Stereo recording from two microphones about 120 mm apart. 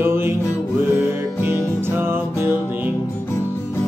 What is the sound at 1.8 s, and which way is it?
Music, 20° right (ahead or behind).